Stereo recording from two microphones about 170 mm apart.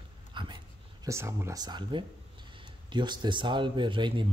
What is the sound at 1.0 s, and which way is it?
Speech, 15° right (ahead or behind).